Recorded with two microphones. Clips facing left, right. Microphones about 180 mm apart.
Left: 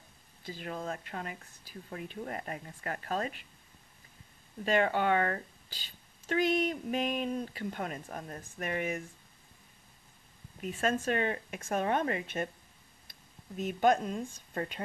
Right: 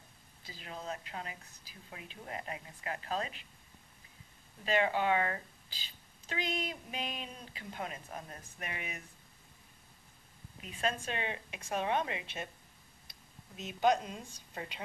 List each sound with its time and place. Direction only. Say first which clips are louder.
0.5 s a woman's voice: left 5 dB; 50° left (ahead or behind)
4.6 s a woman's voice: left 3 dB; 50° left (ahead or behind)
10.6 s a woman's voice: left 5 dB; 45° left (ahead or behind)